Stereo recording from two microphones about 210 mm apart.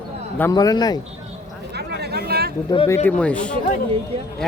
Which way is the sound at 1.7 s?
50° right (ahead or behind).